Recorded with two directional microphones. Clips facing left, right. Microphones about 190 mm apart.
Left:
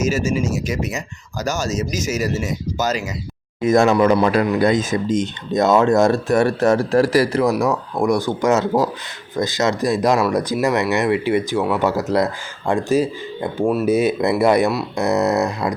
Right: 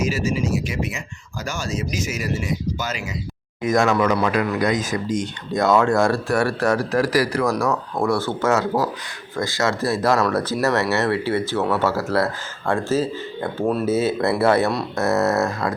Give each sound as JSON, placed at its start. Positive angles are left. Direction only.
{"t": 0.0, "sound": "speech", "side_deg": 45}
{"t": 3.6, "sound": "speech", "side_deg": 25}